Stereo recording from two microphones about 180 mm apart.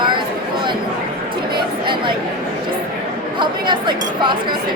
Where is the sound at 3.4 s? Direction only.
25° right (ahead or behind).